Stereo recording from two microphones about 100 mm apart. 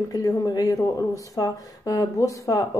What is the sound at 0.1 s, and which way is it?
Speech, 40° left (ahead or behind).